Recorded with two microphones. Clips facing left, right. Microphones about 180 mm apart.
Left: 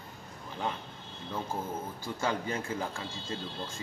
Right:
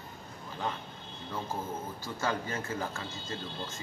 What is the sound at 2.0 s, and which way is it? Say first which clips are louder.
Speech: left 1 dB; 15° left (ahead or behind).